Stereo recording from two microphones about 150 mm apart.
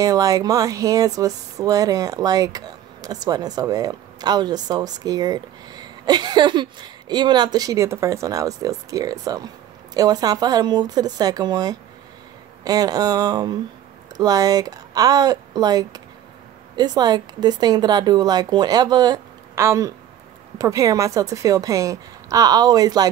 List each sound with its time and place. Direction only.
0.0 s speech: 25° right (ahead or behind)